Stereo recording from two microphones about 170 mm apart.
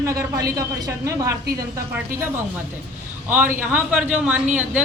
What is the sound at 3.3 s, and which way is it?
A woman's voice, 10° right (ahead or behind).